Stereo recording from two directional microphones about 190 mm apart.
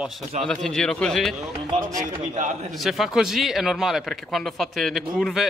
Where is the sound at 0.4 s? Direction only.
Centre (ahead or behind).